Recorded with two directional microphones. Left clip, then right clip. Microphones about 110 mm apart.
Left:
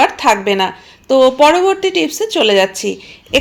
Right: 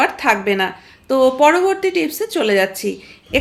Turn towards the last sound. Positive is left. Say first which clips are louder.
# left 4 dB
turn(degrees=30)  # may be behind; listen again after turning